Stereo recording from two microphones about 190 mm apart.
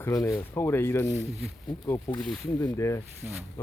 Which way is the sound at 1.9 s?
15° left (ahead or behind).